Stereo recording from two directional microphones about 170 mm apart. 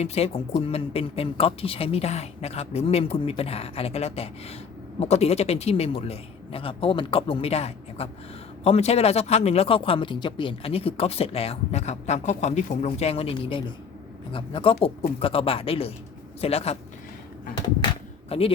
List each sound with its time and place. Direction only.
0.0 s speech: 35° left (ahead or behind)
18.3 s a man's voice: 35° left (ahead or behind)